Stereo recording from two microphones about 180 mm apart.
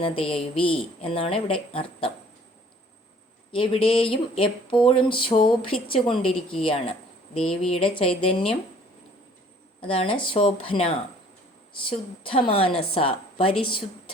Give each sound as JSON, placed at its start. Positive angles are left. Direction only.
{"t": 0.0, "sound": "a woman's voice", "side_deg": 30}
{"t": 3.5, "sound": "a woman's voice", "side_deg": 30}
{"t": 7.3, "sound": "speech", "side_deg": 5}
{"t": 7.7, "sound": "a woman's voice", "side_deg": 30}
{"t": 9.8, "sound": "a woman's voice", "side_deg": 30}